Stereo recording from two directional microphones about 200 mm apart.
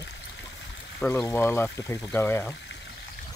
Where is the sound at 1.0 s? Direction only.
10° left (ahead or behind).